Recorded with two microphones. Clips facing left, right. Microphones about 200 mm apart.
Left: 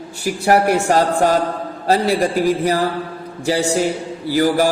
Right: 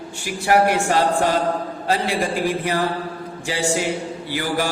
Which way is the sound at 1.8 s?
40° left (ahead or behind).